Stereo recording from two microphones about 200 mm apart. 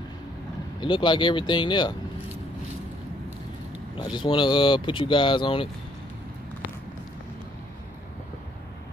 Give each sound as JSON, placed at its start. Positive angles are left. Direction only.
{"t": 0.7, "sound": "speech", "side_deg": 25}
{"t": 3.9, "sound": "speech", "side_deg": 25}